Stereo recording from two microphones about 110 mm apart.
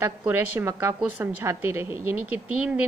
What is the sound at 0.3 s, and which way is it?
Speech, 20° right (ahead or behind).